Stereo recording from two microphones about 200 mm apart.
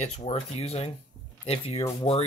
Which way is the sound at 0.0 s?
30° left (ahead or behind).